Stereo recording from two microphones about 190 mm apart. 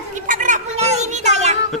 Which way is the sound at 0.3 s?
40° right (ahead or behind).